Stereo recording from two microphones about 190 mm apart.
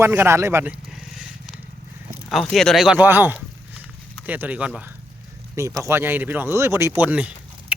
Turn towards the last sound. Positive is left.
turn(degrees=-5)  # may be behind; listen again after turning